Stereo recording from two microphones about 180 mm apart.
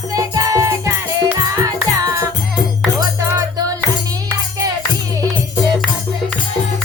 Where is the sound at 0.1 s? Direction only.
20° right (ahead or behind).